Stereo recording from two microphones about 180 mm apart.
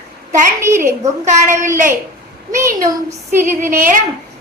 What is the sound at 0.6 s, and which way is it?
Speech, 15° right (ahead or behind).